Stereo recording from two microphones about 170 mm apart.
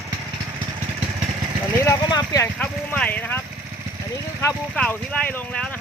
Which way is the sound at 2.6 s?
10° left (ahead or behind).